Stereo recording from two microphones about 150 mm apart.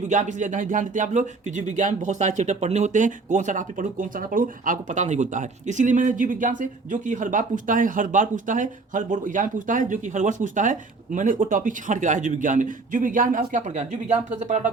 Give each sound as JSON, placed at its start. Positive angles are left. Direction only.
{"t": 0.1, "sound": "speech", "side_deg": -55}